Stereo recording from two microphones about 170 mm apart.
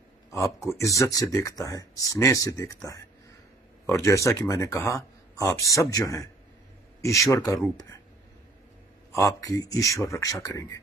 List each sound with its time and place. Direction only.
0.3 s speech: 20° left (ahead or behind)
9.1 s speech: 20° left (ahead or behind)